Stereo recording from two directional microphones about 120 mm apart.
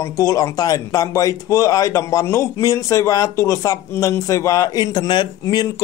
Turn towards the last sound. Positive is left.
turn(degrees=35)  # may be behind; listen again after turning